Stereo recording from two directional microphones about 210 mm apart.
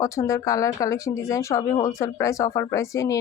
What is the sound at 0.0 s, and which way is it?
Speech, 15° left (ahead or behind).